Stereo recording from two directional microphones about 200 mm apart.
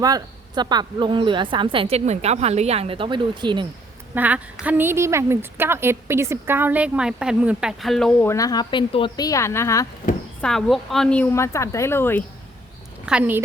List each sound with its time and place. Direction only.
0.0 s a woman's voice: 20° right (ahead or behind)
4.1 s a woman's voice: 10° right (ahead or behind)
8.3 s a woman's voice: 15° left (ahead or behind)
10.4 s a woman's voice: centre (ahead or behind)
13.1 s a woman's voice: 5° right (ahead or behind)